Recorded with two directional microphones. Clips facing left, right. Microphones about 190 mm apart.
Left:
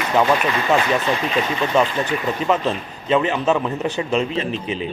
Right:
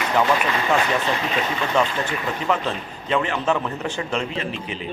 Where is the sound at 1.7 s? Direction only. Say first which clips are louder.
Left 3 dB; 20° left (ahead or behind).